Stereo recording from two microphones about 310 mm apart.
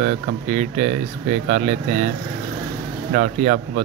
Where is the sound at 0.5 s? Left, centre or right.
Right.